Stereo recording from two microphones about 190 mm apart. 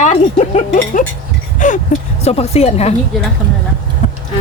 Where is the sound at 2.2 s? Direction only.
30° left (ahead or behind).